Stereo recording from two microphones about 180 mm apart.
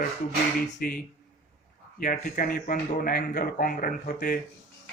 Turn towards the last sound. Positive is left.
turn(degrees=55)  # may be behind; listen again after turning